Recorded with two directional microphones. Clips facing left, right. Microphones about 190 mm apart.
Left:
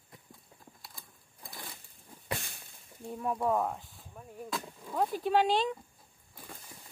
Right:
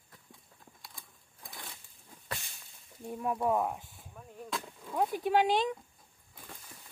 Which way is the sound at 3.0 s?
5° right (ahead or behind).